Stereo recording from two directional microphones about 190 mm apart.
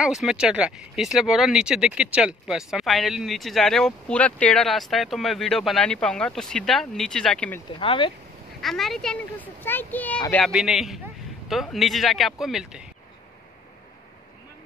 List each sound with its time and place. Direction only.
0.0 s speech: centre (ahead or behind)
7.8 s speech: 25° left (ahead or behind)
8.5 s speech: centre (ahead or behind)